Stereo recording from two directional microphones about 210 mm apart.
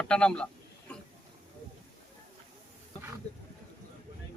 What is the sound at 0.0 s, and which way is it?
Speech, 5° left (ahead or behind).